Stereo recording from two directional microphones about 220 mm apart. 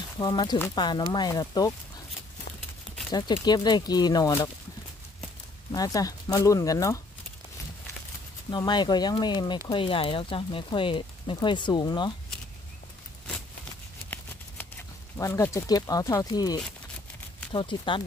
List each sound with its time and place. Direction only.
0.2 s speech: 20° left (ahead or behind)
3.1 s speech: 20° left (ahead or behind)
5.7 s speech: 15° left (ahead or behind)
8.5 s speech: 20° left (ahead or behind)
15.1 s speech: 15° left (ahead or behind)